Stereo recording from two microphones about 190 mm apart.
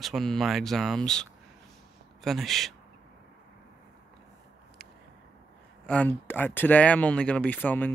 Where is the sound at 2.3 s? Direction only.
Centre (ahead or behind).